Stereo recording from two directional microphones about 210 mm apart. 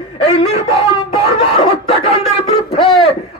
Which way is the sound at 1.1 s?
30° left (ahead or behind).